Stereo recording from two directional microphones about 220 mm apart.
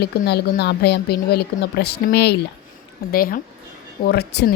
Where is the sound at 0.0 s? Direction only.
45° left (ahead or behind).